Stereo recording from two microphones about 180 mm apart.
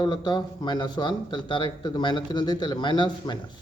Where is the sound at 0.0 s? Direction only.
25° left (ahead or behind).